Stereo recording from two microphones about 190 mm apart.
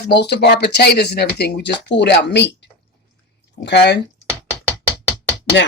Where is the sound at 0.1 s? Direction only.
60° left (ahead or behind).